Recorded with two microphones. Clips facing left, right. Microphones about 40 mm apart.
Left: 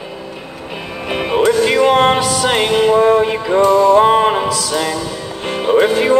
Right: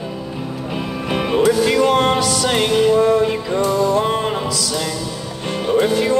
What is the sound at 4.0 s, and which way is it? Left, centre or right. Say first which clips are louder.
Music: left 8 dB; left.